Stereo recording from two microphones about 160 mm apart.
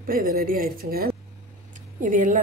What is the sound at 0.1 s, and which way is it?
A woman's voice, 65° right (ahead or behind).